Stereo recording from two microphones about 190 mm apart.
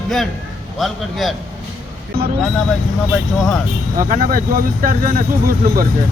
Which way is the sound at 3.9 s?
45° right (ahead or behind).